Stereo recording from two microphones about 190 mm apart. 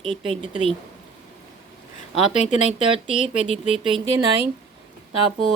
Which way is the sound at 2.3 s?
40° left (ahead or behind).